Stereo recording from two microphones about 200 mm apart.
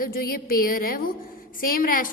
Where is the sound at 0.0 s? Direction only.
45° left (ahead or behind).